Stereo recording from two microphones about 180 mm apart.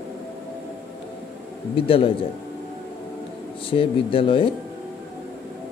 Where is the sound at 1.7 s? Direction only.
30° left (ahead or behind).